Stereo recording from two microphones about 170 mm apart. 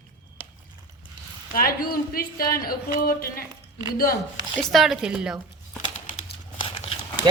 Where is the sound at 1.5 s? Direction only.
60° left (ahead or behind).